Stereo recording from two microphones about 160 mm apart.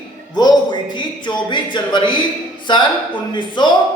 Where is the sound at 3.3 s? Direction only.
30° left (ahead or behind).